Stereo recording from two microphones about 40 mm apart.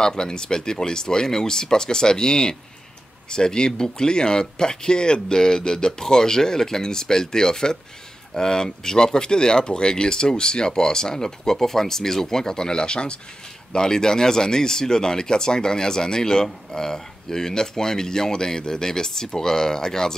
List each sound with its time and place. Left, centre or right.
0.0 s speech: centre